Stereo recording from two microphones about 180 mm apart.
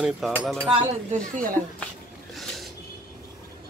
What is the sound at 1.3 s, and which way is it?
Speech, 50° right (ahead or behind).